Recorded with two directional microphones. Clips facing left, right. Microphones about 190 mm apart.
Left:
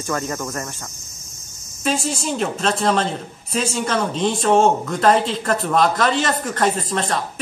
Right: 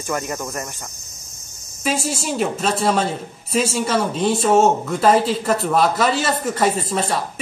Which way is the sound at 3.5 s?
5° right (ahead or behind).